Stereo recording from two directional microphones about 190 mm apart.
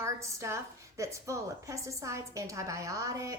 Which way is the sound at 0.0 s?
15° right (ahead or behind).